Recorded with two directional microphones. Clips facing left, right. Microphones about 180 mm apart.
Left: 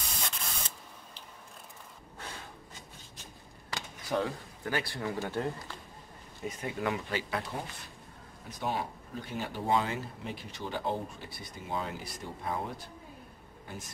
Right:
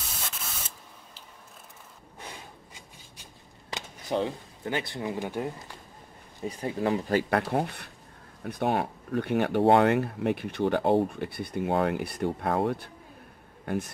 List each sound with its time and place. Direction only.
0.2 s spray: 5° right (ahead or behind)
2.1 s a sound: 15° right (ahead or behind)
3.7 s speech: 20° right (ahead or behind)
6.4 s speech: 35° right (ahead or behind)
7.2 s speech: 65° right (ahead or behind)